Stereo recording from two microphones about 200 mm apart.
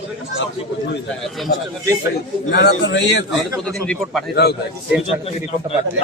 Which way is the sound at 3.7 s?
Centre (ahead or behind).